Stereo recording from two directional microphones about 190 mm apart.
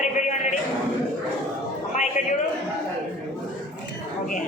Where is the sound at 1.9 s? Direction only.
40° left (ahead or behind).